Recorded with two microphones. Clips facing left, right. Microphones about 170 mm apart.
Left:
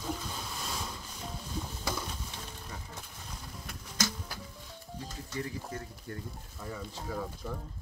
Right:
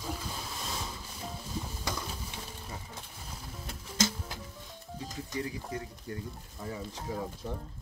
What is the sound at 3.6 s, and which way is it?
Music, 25° right (ahead or behind).